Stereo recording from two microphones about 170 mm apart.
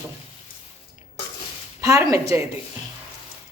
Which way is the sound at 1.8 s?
20° right (ahead or behind).